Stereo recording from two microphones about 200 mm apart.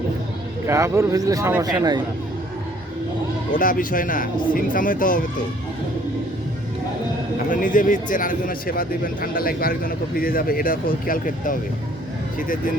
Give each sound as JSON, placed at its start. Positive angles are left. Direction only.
{"t": 0.7, "sound": "speech", "side_deg": -15}
{"t": 3.5, "sound": "speech", "side_deg": 45}
{"t": 7.5, "sound": "speech", "side_deg": 40}